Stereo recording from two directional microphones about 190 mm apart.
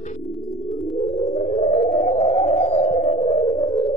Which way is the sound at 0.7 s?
Centre (ahead or behind).